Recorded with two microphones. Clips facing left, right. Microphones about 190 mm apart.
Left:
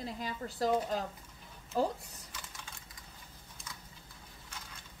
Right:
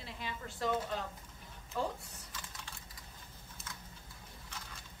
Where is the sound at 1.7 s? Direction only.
35° left (ahead or behind).